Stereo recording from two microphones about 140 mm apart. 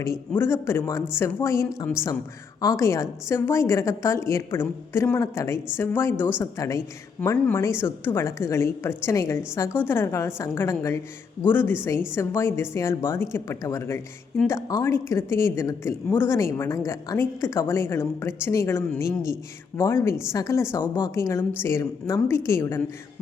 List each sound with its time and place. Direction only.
0.0 s a woman's voice: 20° left (ahead or behind)